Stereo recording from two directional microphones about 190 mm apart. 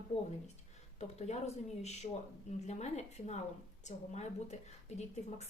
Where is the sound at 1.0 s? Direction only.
35° left (ahead or behind).